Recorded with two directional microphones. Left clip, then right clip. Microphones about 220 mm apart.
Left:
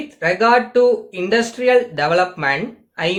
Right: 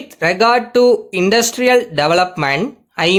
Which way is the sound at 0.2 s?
50° right (ahead or behind).